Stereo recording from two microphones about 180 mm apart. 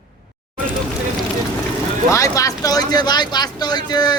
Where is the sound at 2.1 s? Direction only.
15° left (ahead or behind).